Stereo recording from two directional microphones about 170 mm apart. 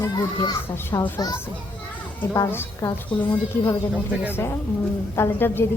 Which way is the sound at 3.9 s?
10° right (ahead or behind).